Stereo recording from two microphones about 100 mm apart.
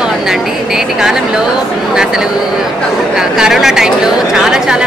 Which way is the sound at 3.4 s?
5° right (ahead or behind).